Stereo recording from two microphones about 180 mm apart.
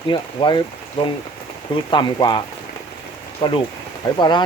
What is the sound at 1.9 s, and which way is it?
Speech, 25° left (ahead or behind).